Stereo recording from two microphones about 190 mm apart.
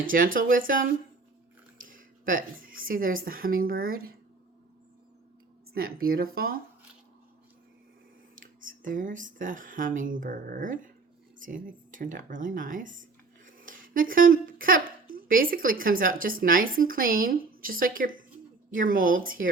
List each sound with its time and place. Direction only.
0.0 s a woman's voice: 45° right (ahead or behind)
5.7 s a woman's voice: 50° right (ahead or behind)
8.4 s a woman's voice: 45° right (ahead or behind)